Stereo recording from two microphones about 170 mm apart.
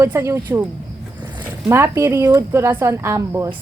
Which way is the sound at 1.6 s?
15° right (ahead or behind).